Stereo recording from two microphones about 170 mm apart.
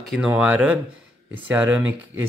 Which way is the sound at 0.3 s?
10° right (ahead or behind).